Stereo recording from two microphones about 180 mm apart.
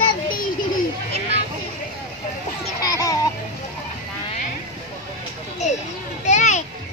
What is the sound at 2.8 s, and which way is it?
Music, 20° left (ahead or behind).